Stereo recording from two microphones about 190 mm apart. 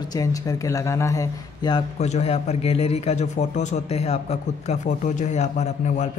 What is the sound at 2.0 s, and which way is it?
A man's voice, 35° left (ahead or behind).